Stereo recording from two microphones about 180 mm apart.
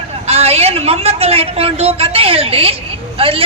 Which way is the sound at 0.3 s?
35° right (ahead or behind).